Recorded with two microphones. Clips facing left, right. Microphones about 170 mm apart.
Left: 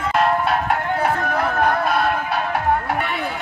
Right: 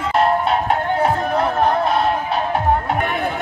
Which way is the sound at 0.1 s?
25° right (ahead or behind).